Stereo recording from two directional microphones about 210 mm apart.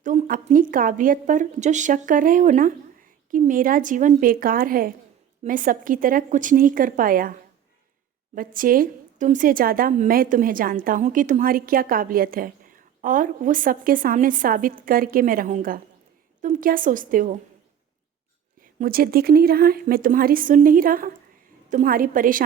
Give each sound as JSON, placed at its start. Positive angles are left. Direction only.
{"t": 0.0, "sound": "a woman's voice", "side_deg": -35}
{"t": 8.4, "sound": "a woman's voice", "side_deg": -40}
{"t": 18.6, "sound": "a woman's voice", "side_deg": -40}